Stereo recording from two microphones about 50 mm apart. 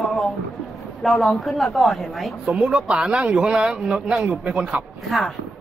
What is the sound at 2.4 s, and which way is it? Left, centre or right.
Speech, right.